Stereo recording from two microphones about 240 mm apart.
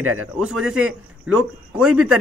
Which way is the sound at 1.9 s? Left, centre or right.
Right.